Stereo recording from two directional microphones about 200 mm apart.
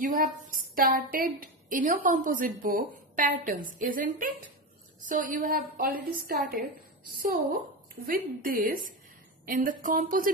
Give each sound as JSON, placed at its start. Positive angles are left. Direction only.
{"t": 0.0, "sound": "a woman's voice", "side_deg": -40}